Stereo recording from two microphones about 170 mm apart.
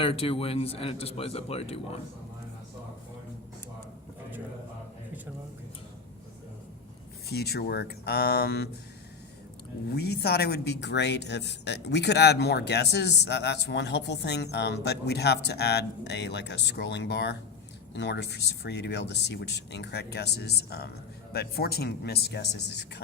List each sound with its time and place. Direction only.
0.0 s speech: 35° left (ahead or behind)
7.3 s speech: 70° left (ahead or behind)
9.9 s speech: 70° left (ahead or behind)